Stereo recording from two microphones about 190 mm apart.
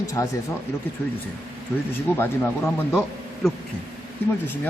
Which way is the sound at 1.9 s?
10° left (ahead or behind).